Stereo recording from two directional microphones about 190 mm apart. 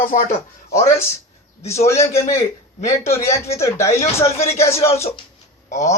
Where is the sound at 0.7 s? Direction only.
15° left (ahead or behind).